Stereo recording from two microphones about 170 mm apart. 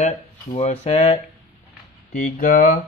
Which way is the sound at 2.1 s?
55° left (ahead or behind).